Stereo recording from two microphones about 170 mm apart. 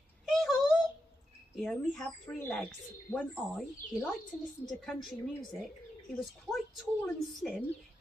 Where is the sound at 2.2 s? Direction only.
10° left (ahead or behind).